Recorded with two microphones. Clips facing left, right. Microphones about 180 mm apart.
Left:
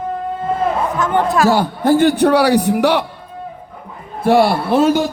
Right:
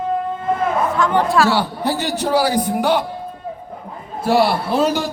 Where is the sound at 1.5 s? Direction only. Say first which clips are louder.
Left 5 dB; 50° left (ahead or behind); by 3.0 s 70° left (ahead or behind).